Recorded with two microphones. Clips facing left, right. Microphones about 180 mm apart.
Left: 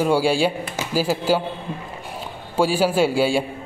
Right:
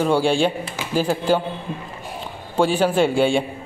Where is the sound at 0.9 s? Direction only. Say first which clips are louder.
Right 1 dB; 5° left (ahead or behind).